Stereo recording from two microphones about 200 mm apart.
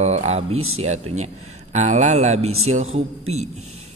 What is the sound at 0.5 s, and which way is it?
Speech, 90° right.